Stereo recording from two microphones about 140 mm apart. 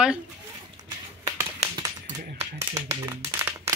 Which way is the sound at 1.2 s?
25° right (ahead or behind).